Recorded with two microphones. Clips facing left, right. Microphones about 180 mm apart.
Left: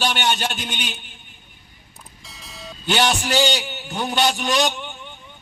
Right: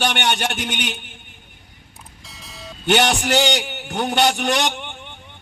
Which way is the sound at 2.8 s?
70° right (ahead or behind).